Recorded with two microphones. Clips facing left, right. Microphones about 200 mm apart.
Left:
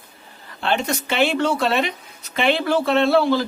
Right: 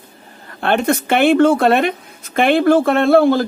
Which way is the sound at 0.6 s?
55° right (ahead or behind).